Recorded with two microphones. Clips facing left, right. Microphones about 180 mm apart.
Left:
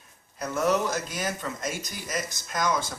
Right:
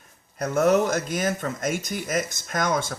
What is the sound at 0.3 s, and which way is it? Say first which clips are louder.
Speech: right 5 dB; 50° right (ahead or behind).